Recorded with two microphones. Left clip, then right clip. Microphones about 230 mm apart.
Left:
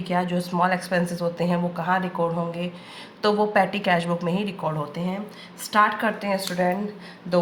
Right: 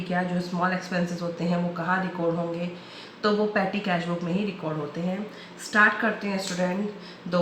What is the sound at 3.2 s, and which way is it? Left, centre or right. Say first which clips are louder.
Speech: left 4 dB; left.